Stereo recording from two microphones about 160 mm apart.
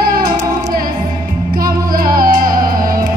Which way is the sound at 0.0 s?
65° right (ahead or behind).